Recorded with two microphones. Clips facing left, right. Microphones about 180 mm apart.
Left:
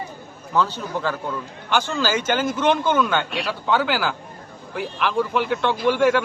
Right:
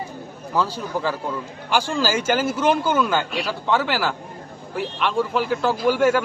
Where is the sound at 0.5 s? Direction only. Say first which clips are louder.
Left 1 dB; 5° right (ahead or behind).